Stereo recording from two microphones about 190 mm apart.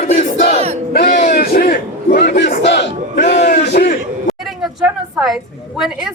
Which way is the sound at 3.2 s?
40° left (ahead or behind).